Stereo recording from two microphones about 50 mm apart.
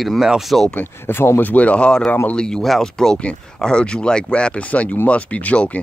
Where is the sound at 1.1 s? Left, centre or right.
Left.